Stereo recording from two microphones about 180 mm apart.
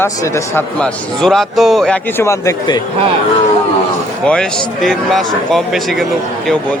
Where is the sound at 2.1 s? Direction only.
15° left (ahead or behind).